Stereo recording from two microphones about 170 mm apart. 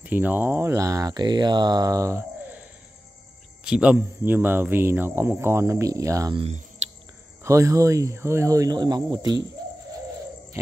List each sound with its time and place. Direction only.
0.0 s speech: 10° right (ahead or behind)
3.6 s speech: 5° right (ahead or behind)
7.4 s speech: 20° right (ahead or behind)